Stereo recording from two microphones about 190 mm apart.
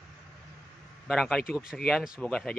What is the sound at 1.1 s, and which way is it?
Speech, centre (ahead or behind).